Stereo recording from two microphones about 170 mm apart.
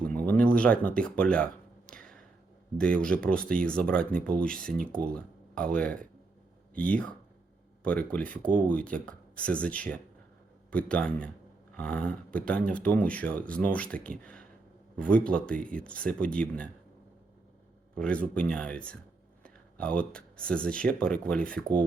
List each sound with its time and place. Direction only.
0.0 s speech: 10° left (ahead or behind)
1.9 s a sound: 5° left (ahead or behind)
2.7 s speech: 5° left (ahead or behind)
4.9 s speech: 60° right (ahead or behind)
5.7 s speech: 5° left (ahead or behind)
17.9 s speech: 5° left (ahead or behind)